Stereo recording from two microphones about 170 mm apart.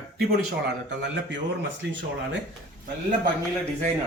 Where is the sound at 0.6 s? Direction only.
90° right.